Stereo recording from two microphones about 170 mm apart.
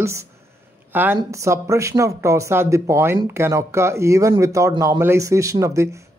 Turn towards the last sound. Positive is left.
turn(degrees=-20)  # may be behind; listen again after turning